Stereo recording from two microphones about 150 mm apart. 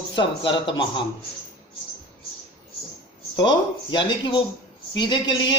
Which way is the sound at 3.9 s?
30° left (ahead or behind).